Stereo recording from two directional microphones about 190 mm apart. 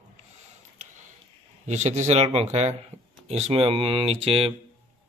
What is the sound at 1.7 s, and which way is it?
Speech, 35° right (ahead or behind).